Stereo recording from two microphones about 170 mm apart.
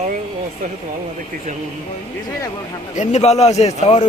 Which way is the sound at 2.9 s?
40° left (ahead or behind).